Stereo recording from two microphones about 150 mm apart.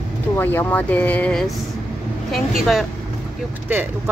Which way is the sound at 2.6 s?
Centre (ahead or behind).